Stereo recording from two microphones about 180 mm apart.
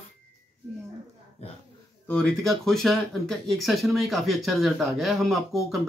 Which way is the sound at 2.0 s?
5° left (ahead or behind).